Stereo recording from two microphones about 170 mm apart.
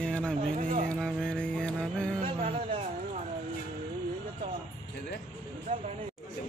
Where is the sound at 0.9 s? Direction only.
5° left (ahead or behind).